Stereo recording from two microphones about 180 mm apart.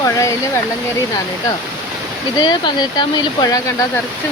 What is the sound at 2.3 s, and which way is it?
Speech, 25° left (ahead or behind).